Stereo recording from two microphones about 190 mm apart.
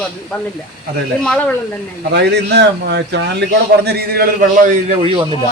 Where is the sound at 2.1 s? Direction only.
65° right (ahead or behind); by 5.4 s 30° right (ahead or behind).